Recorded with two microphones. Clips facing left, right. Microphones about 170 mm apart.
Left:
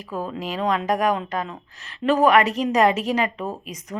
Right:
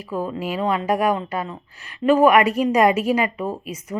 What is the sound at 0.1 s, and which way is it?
Speech, 10° right (ahead or behind).